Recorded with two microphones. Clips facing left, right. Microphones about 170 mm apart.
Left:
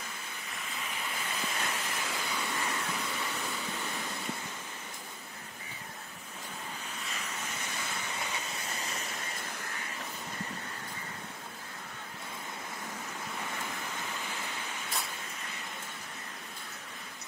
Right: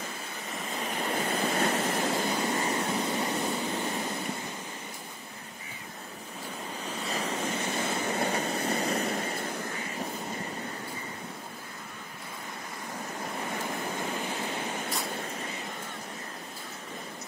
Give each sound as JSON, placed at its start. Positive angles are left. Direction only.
{"t": 0.7, "sound": "waves", "side_deg": -40}
{"t": 1.9, "sound": "vehicle", "side_deg": -45}
{"t": 7.0, "sound": "waves", "side_deg": -35}
{"t": 7.3, "sound": "waves", "side_deg": -65}
{"t": 7.7, "sound": "train", "side_deg": -55}
{"t": 8.7, "sound": "vehicle", "side_deg": -35}
{"t": 9.1, "sound": "vehicle", "side_deg": -50}